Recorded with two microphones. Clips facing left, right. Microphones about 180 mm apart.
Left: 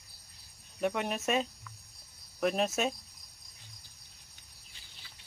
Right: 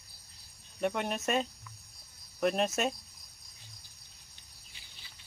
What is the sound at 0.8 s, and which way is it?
Cricket, centre (ahead or behind).